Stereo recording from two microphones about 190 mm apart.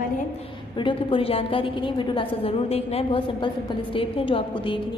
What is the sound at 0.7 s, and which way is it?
A woman's voice, 25° left (ahead or behind).